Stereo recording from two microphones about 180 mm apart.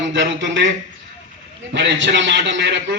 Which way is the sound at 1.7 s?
85° right.